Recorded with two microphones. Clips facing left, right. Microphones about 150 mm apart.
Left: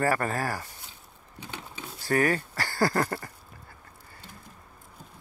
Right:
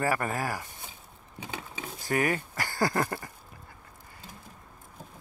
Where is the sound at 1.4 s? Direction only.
10° right (ahead or behind).